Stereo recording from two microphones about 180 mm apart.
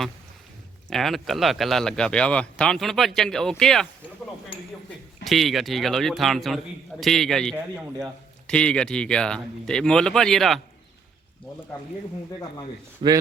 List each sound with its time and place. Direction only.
0.9 s speech: centre (ahead or behind)
5.2 s speech: centre (ahead or behind)
13.0 s speech: 30° right (ahead or behind)